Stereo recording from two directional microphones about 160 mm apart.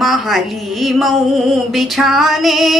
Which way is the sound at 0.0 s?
Centre (ahead or behind).